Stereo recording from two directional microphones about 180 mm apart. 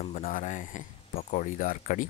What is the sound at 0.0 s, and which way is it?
Speech, 45° left (ahead or behind).